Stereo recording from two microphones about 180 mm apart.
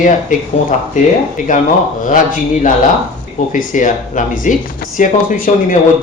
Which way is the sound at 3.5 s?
45° left (ahead or behind).